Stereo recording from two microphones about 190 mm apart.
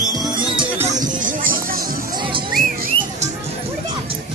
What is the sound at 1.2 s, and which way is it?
Music, 45° right (ahead or behind).